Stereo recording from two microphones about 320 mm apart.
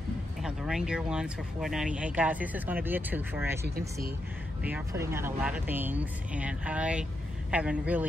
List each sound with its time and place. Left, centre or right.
0.4 s speech: centre
3.6 s speech: right
4.6 s speech: centre